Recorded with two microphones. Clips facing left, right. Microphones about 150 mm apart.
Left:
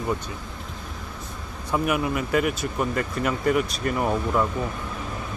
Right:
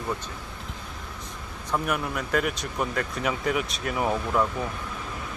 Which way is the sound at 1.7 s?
5° left (ahead or behind).